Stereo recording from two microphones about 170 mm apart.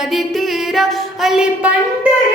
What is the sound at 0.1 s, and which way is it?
Music, centre (ahead or behind).